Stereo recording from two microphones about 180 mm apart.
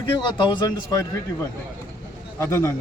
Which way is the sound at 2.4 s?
15° left (ahead or behind).